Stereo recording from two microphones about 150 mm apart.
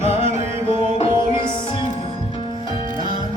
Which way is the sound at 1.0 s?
35° left (ahead or behind).